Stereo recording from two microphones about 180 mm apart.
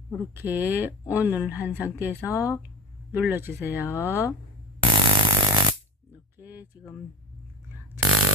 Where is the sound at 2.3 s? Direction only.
15° left (ahead or behind).